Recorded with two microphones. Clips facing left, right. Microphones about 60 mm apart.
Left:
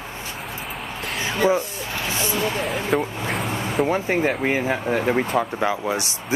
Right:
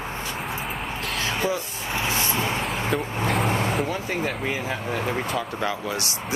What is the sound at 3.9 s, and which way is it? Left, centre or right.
Speech, left.